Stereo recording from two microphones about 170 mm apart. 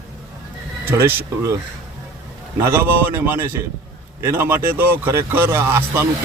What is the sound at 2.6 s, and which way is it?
Speech, 15° right (ahead or behind).